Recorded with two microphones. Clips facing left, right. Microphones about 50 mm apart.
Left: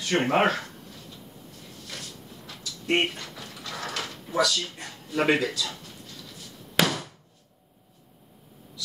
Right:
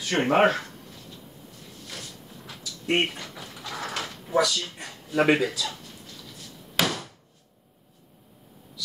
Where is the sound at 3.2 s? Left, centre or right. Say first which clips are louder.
Right 1 dB; centre.